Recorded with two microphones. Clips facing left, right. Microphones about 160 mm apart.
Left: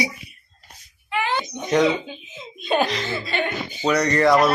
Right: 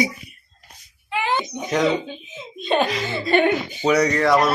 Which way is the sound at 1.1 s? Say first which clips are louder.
Right 1 dB; 20° right (ahead or behind).